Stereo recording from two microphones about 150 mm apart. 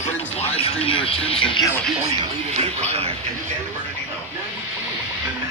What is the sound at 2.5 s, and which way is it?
Music, 45° right (ahead or behind).